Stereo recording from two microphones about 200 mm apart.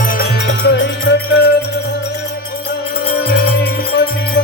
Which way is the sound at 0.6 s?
60° left (ahead or behind).